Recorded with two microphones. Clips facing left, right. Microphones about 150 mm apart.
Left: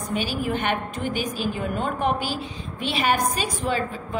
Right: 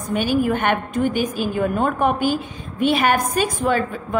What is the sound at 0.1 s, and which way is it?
A woman's voice, 50° right (ahead or behind).